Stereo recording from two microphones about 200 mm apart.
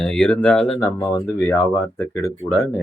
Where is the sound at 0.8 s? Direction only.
15° left (ahead or behind).